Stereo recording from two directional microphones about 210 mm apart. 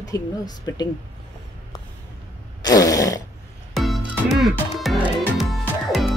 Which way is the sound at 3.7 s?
Centre (ahead or behind).